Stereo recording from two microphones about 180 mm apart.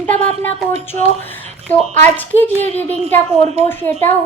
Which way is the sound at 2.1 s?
10° left (ahead or behind).